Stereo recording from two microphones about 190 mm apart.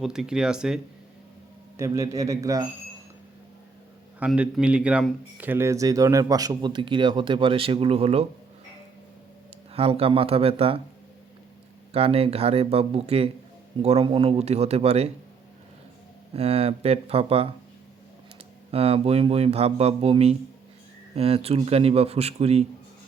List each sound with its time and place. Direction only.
0.0 s speech: 5° right (ahead or behind)
1.7 s a man's voice: 15° right (ahead or behind)
4.2 s a man's voice: 5° right (ahead or behind); by 8.3 s 35° right (ahead or behind)
9.7 s speech: 30° right (ahead or behind)
11.9 s speech: 30° right (ahead or behind)
16.3 s speech: 30° right (ahead or behind)
18.7 s speech: 30° right (ahead or behind)